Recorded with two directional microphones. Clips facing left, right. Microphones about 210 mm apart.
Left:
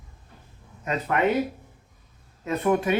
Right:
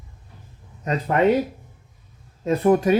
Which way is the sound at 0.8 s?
30° right (ahead or behind).